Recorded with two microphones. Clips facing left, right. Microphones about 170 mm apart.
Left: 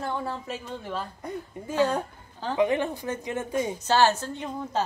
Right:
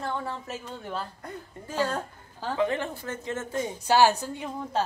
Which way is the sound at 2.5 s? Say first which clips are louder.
Left 3 dB; 15° left (ahead or behind).